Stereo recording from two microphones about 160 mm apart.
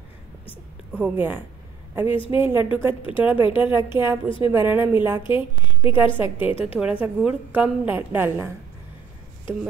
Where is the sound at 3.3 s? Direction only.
10° right (ahead or behind).